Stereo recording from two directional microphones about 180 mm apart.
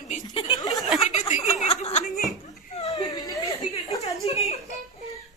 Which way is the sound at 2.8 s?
20° left (ahead or behind).